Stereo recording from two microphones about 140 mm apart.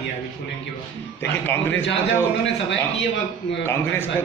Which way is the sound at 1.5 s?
15° left (ahead or behind).